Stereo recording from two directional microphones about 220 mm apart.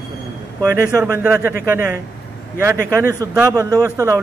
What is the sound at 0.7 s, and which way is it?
Speech, 15° right (ahead or behind).